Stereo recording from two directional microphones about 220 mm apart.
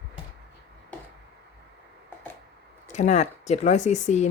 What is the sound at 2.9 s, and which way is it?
Speech, 30° left (ahead or behind).